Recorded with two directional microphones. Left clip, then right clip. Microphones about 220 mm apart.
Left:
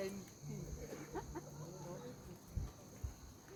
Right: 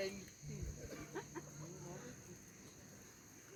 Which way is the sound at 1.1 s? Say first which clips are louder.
Left 1 dB; 60° left (ahead or behind).